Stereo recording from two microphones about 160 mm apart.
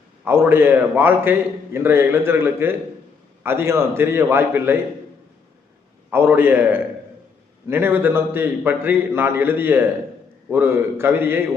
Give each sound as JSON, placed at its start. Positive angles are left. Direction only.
{"t": 0.3, "sound": "a man's voice", "side_deg": -15}
{"t": 6.1, "sound": "a man's voice", "side_deg": -15}